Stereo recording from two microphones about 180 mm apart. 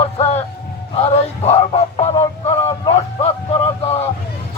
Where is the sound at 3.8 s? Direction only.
35° left (ahead or behind).